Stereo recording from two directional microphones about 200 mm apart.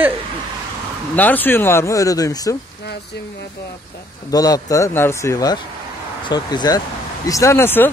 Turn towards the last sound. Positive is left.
turn(degrees=10)  # may be behind; listen again after turning